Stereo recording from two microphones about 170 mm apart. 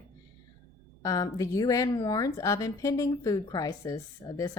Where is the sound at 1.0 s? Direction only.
20° left (ahead or behind).